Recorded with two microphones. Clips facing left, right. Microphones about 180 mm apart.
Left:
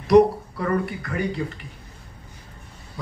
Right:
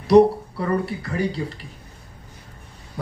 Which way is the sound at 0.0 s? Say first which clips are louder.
Right 1 dB; 30° right (ahead or behind).